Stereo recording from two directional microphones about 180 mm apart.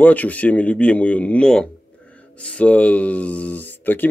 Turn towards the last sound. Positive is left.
turn(degrees=10)  # may be behind; listen again after turning